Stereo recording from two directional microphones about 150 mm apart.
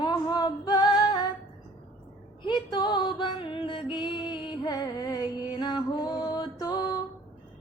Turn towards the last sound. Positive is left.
turn(degrees=25)  # may be behind; listen again after turning